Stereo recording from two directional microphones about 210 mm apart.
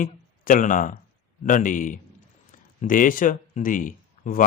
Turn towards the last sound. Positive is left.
turn(degrees=40)  # may be behind; listen again after turning